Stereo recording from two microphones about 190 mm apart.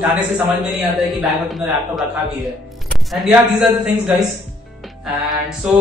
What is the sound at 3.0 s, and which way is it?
Speech, centre (ahead or behind).